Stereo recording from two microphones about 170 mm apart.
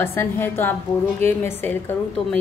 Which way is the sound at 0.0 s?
15° left (ahead or behind).